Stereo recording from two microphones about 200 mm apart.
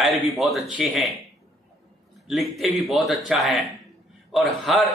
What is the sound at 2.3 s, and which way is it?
A man's voice, centre (ahead or behind).